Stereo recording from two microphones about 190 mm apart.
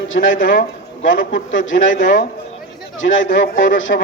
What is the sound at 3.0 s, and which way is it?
A man's voice, 90° left.